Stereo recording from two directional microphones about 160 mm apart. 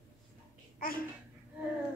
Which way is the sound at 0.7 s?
65° left (ahead or behind).